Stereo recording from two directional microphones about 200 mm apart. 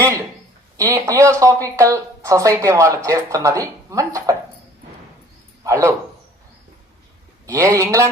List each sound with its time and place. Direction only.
0.0 s a sound: 10° right (ahead or behind)
0.8 s a woman's voice: 15° right (ahead or behind)
5.6 s a woman's voice: 15° right (ahead or behind)
7.4 s a woman's voice: 15° right (ahead or behind)